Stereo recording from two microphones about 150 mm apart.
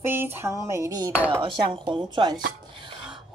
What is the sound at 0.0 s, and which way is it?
A woman's voice, 15° right (ahead or behind).